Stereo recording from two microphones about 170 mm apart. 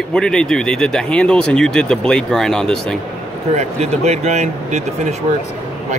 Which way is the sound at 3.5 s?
40° right (ahead or behind).